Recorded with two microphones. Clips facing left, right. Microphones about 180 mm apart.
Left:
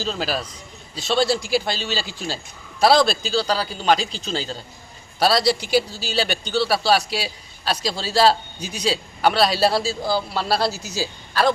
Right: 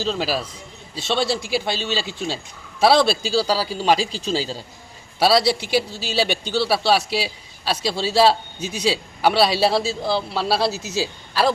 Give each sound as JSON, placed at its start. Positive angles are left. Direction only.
{"t": 0.0, "sound": "a man's voice", "side_deg": 0}
{"t": 4.0, "sound": "speech", "side_deg": -35}
{"t": 4.3, "sound": "a man's voice", "side_deg": -5}